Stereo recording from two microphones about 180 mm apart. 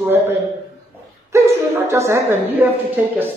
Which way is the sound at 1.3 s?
15° right (ahead or behind).